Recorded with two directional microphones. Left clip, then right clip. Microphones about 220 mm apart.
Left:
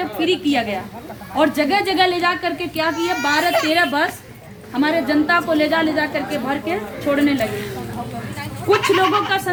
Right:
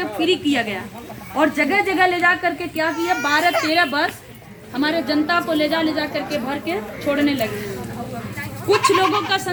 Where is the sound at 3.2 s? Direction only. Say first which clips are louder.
Left 1 dB; 55° left (ahead or behind).